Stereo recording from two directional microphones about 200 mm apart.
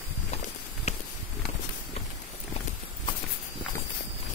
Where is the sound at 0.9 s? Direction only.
30° left (ahead or behind).